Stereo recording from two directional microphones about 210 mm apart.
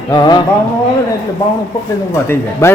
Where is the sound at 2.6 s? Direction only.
15° left (ahead or behind).